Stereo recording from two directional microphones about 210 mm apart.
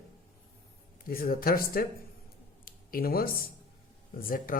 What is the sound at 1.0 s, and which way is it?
Speech, 45° left (ahead or behind).